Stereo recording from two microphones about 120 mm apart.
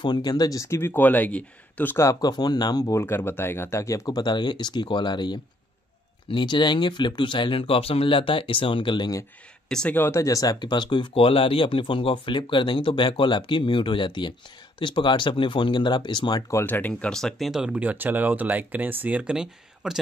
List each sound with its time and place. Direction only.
0.0 s speech: 35° left (ahead or behind)
3.0 s speech: 20° left (ahead or behind); by 9.2 s 40° left (ahead or behind)
9.7 s speech: 5° left (ahead or behind)
9.9 s speech: 20° left (ahead or behind); by 16.4 s 40° left (ahead or behind)
16.4 s speech: 20° left (ahead or behind); by 20.0 s 5° right (ahead or behind)